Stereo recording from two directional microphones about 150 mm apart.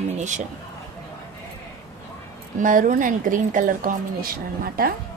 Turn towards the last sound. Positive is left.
turn(degrees=-80)